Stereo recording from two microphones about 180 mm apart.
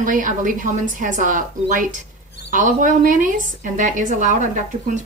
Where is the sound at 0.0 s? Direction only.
45° right (ahead or behind).